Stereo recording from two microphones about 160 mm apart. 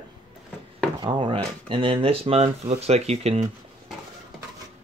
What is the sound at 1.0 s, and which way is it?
Speech, 30° right (ahead or behind).